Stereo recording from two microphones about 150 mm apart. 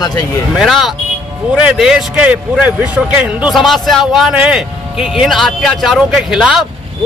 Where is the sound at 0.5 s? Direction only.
Centre (ahead or behind).